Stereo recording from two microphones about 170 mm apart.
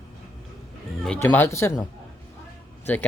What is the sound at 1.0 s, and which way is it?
Speech, 10° left (ahead or behind).